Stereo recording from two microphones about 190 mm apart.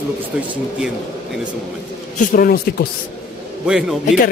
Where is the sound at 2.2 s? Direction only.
50° left (ahead or behind).